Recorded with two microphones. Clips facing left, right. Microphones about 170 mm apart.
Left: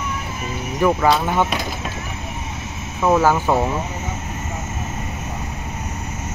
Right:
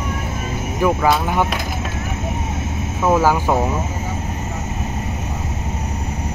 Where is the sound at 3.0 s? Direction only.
10° right (ahead or behind).